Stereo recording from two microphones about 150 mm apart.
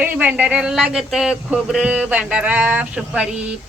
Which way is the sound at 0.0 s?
10° right (ahead or behind).